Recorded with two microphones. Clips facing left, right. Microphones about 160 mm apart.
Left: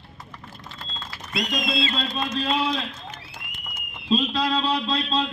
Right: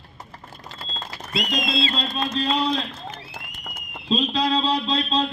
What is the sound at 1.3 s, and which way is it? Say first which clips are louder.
Speech: right 1 dB; 25° right (ahead or behind).